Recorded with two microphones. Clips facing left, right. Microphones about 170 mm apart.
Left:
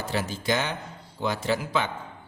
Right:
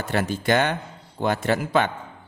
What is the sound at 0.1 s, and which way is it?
A man's voice, 60° right (ahead or behind).